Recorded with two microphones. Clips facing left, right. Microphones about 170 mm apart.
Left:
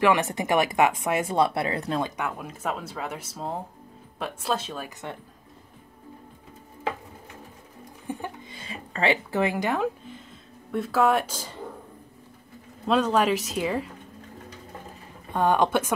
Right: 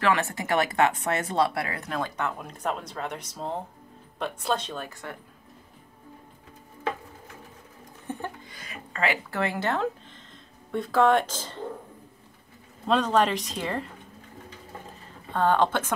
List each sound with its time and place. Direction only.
0.0 s speech: 15° left (ahead or behind)
1.5 s speech: 25° left (ahead or behind); by 4.8 s 5° left (ahead or behind)
8.1 s a sound: 15° left (ahead or behind)
8.5 s speech: 30° left (ahead or behind)
9.3 s speech: 15° left (ahead or behind)
12.8 s speech: 5° left (ahead or behind)
15.3 s speech: 15° left (ahead or behind)